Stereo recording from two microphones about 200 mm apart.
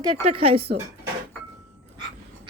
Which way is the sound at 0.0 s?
30° right (ahead or behind).